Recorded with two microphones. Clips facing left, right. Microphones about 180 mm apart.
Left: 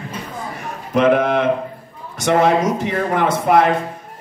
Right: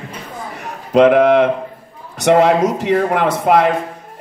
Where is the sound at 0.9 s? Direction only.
70° right (ahead or behind).